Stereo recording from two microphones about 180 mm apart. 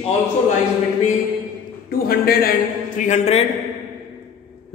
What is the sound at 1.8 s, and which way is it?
Speech, 60° left (ahead or behind).